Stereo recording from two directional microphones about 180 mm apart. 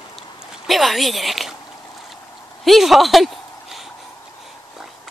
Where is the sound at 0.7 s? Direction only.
Centre (ahead or behind).